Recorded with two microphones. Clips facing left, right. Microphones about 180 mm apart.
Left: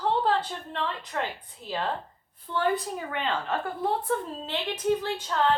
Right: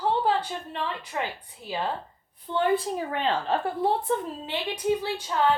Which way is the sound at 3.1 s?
35° right (ahead or behind).